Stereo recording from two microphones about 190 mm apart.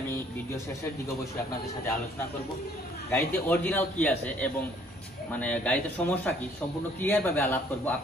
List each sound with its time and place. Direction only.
3.1 s a man's voice: 10° left (ahead or behind)